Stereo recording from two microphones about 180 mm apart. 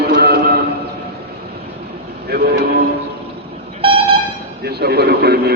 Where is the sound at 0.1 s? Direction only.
60° right (ahead or behind).